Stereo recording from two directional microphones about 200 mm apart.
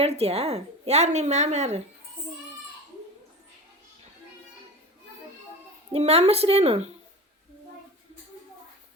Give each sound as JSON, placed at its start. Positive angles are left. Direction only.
{"t": 0.0, "sound": "a woman's voice", "side_deg": -30}
{"t": 5.9, "sound": "a woman's voice", "side_deg": -30}